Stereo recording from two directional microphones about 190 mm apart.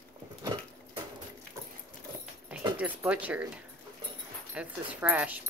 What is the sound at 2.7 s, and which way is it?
Speech, 5° right (ahead or behind).